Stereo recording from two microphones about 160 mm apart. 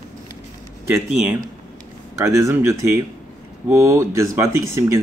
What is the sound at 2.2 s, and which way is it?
Speech, 20° right (ahead or behind).